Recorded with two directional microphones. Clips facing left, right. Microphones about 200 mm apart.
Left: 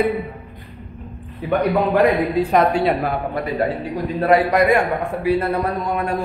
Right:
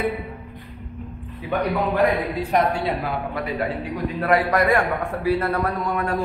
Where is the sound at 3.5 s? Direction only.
35° left (ahead or behind).